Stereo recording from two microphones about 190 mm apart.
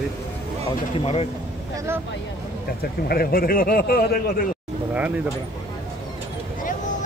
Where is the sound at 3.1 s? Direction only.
50° left (ahead or behind).